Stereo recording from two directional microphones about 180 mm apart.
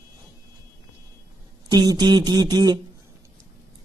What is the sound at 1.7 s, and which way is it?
Speech, 20° right (ahead or behind).